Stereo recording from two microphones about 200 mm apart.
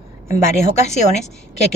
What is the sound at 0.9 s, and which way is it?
Speech, 35° left (ahead or behind).